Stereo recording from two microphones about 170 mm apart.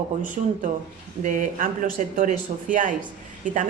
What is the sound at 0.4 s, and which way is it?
Speech, 45° right (ahead or behind).